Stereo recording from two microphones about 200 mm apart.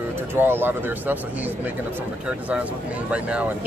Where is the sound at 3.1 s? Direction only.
5° right (ahead or behind).